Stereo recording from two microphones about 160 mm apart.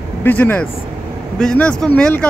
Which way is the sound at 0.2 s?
10° left (ahead or behind).